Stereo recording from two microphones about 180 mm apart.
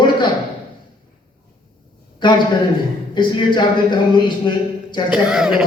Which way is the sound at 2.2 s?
25° left (ahead or behind).